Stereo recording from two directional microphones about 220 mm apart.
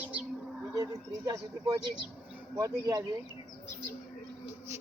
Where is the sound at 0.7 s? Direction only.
15° right (ahead or behind).